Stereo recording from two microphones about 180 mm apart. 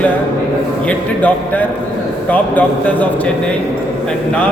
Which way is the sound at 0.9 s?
10° left (ahead or behind).